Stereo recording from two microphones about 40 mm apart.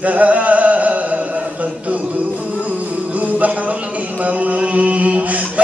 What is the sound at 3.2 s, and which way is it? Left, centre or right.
Music, right.